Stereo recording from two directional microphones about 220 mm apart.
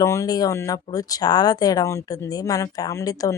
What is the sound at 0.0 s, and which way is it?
Speech, 15° left (ahead or behind).